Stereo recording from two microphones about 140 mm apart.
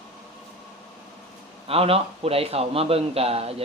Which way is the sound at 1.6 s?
45° right (ahead or behind).